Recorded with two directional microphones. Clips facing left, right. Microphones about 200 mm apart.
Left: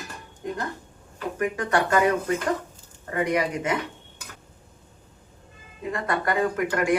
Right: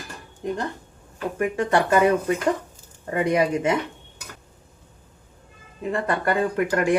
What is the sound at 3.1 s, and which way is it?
Speech, 25° right (ahead or behind).